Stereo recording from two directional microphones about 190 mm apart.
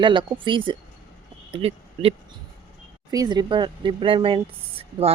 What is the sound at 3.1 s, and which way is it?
Speech, 20° right (ahead or behind).